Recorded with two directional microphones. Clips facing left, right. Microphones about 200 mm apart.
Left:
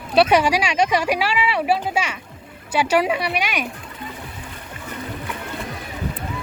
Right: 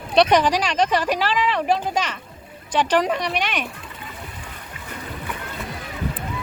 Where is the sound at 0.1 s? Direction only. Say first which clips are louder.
Left 1 dB; 5° left (ahead or behind).